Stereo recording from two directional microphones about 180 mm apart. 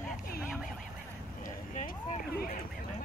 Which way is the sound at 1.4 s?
45° left (ahead or behind).